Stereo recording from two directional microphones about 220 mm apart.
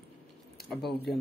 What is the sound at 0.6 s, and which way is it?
Speech, centre (ahead or behind).